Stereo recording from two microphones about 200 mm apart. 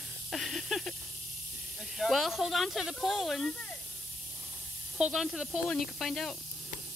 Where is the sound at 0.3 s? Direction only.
Centre (ahead or behind).